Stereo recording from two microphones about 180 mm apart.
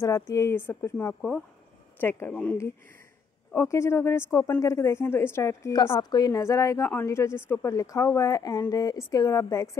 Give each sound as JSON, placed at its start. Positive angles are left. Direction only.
{"t": 0.0, "sound": "speech", "side_deg": 15}